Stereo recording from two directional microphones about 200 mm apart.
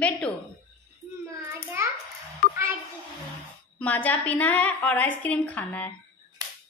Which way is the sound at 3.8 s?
10° left (ahead or behind).